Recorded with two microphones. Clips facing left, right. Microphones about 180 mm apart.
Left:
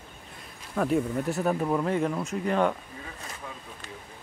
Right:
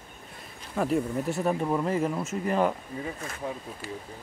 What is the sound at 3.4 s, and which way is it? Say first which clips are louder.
Speech: right 9 dB; 30° right (ahead or behind).